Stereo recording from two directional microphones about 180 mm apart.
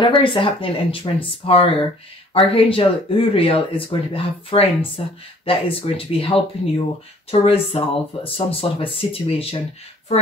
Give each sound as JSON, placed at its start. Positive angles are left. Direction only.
{"t": 0.0, "sound": "speech", "side_deg": 25}